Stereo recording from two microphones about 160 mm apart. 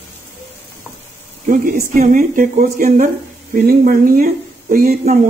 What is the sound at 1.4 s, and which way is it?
Speech, 55° right (ahead or behind).